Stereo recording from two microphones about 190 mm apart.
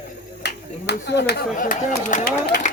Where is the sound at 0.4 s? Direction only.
65° left (ahead or behind).